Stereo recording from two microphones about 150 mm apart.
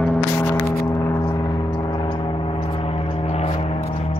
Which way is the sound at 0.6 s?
20° left (ahead or behind).